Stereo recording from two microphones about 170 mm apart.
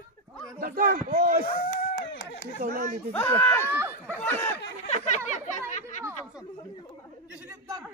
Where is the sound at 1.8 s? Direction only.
90° left.